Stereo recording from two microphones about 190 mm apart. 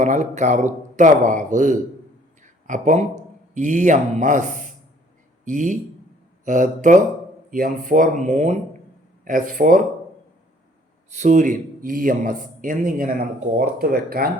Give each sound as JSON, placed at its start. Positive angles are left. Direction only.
{"t": 0.0, "sound": "speech", "side_deg": -40}
{"t": 2.4, "sound": "a sound", "side_deg": -40}
{"t": 3.5, "sound": "speech", "side_deg": -40}
{"t": 11.1, "sound": "speech", "side_deg": -40}